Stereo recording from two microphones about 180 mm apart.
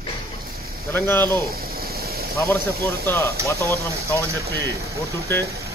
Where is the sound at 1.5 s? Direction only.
55° right (ahead or behind).